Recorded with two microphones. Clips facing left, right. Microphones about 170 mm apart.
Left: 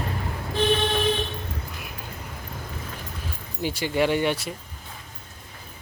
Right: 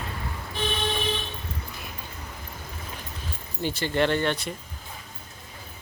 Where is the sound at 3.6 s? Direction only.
10° left (ahead or behind).